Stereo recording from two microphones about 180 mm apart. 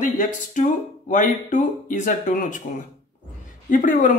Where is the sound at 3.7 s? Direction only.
45° left (ahead or behind).